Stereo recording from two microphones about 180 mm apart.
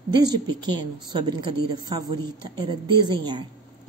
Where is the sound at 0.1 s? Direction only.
25° right (ahead or behind).